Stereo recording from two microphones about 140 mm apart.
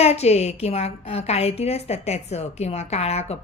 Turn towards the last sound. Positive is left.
turn(degrees=50)  # may be behind; listen again after turning